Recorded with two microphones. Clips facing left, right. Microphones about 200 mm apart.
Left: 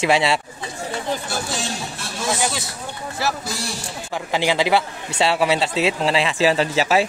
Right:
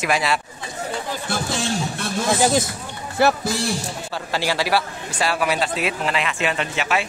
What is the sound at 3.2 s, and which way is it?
Speech, 55° right (ahead or behind).